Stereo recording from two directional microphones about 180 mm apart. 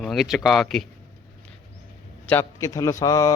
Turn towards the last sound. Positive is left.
turn(degrees=15)  # may be behind; listen again after turning